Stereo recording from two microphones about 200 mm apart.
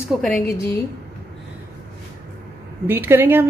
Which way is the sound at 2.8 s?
10° right (ahead or behind).